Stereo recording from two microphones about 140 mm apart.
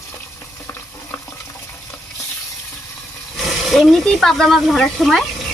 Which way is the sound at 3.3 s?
Centre (ahead or behind).